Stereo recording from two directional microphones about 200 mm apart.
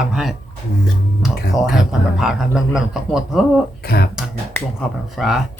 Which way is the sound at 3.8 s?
50° left (ahead or behind).